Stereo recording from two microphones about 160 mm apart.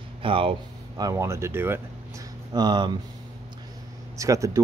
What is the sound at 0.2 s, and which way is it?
Speech, 35° right (ahead or behind).